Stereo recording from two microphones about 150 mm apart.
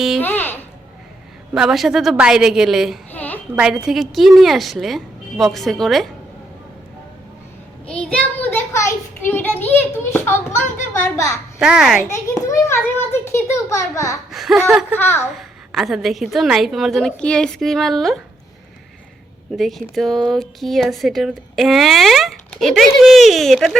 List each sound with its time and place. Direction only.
0.2 s a sound: 10° left (ahead or behind)
1.5 s speech: 5° right (ahead or behind)
3.1 s a sound: 10° left (ahead or behind)
3.6 s speech: 5° right (ahead or behind)
7.9 s a child's voice: 5° left (ahead or behind)
11.6 s speech: 5° right (ahead or behind)
12.5 s a child's voice: 15° left (ahead or behind)
14.3 s speech: centre (ahead or behind)
14.9 s a child's voice: 15° left (ahead or behind)
15.4 s speech: centre (ahead or behind)
19.5 s speech: centre (ahead or behind)